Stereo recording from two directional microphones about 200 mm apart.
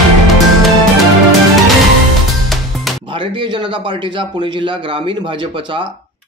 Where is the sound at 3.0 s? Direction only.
25° right (ahead or behind).